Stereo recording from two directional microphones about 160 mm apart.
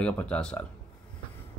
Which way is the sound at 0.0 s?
5° left (ahead or behind).